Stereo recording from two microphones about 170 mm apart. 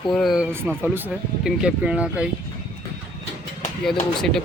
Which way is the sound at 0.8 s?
10° right (ahead or behind).